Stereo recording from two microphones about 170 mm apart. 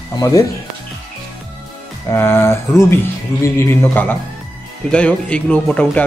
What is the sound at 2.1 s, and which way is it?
Speech, 15° left (ahead or behind).